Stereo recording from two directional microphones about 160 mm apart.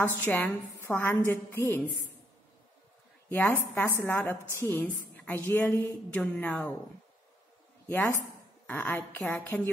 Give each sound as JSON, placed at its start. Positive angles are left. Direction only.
{"t": 0.0, "sound": "a woman's voice", "side_deg": 10}
{"t": 3.3, "sound": "a woman's voice", "side_deg": 10}
{"t": 7.9, "sound": "a woman's voice", "side_deg": 10}